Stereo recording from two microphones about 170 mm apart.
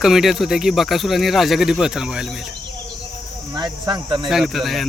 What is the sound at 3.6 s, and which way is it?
Speech, 25° right (ahead or behind).